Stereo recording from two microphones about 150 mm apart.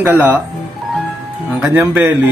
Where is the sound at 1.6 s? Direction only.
10° right (ahead or behind).